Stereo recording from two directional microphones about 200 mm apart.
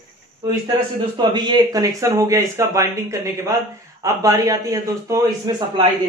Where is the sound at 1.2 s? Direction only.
20° right (ahead or behind).